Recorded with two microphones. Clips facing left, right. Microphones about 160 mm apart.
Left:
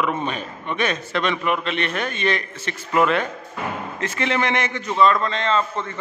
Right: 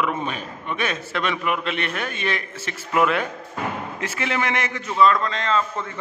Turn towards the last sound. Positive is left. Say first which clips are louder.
# left 2 dB
turn(degrees=-5)  # may be behind; listen again after turning